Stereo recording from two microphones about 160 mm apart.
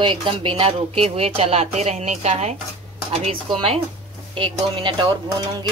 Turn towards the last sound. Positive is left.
turn(degrees=-25)  # may be behind; listen again after turning